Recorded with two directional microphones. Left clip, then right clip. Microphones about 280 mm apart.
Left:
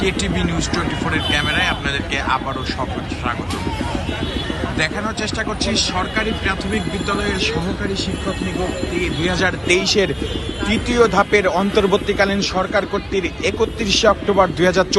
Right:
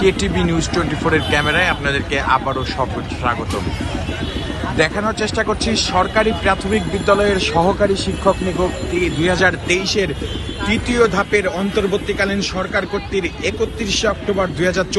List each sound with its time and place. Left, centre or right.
0.0 s a man's voice: centre
4.8 s a man's voice: centre
9.0 s speech: centre